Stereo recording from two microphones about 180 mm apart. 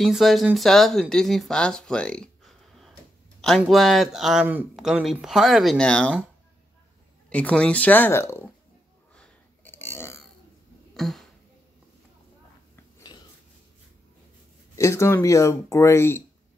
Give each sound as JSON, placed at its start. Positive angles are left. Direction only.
{"t": 0.0, "sound": "speech", "side_deg": 0}
{"t": 7.2, "sound": "speech", "side_deg": 5}
{"t": 9.1, "sound": "burping", "side_deg": 10}
{"t": 11.0, "sound": "a sound", "side_deg": 0}
{"t": 14.8, "sound": "speech", "side_deg": 15}